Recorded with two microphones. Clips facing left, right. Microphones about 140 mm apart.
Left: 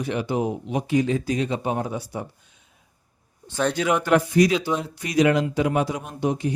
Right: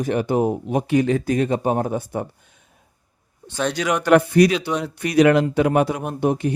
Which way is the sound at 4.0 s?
65° right (ahead or behind).